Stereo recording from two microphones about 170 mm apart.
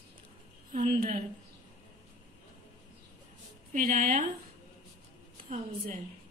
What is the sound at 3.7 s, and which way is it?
Speech, 45° right (ahead or behind).